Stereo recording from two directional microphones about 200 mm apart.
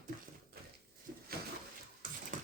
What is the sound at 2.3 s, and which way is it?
Beatboxing, 40° right (ahead or behind).